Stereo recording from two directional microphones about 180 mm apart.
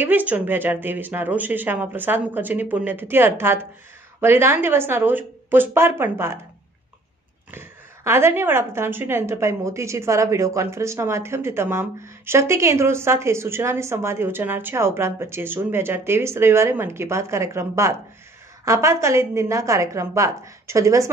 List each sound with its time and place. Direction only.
0.0 s a woman's voice: 10° right (ahead or behind)
7.5 s a woman's voice: 15° right (ahead or behind)